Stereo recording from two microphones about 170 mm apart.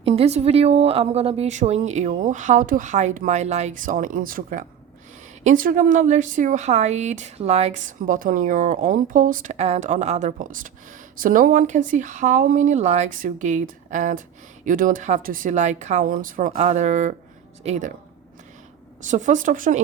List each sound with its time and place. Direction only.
0.0 s a woman's voice: 35° right (ahead or behind); by 16.5 s 50° right (ahead or behind)
16.5 s a woman's voice: 40° right (ahead or behind)
19.0 s a woman's voice: 45° right (ahead or behind)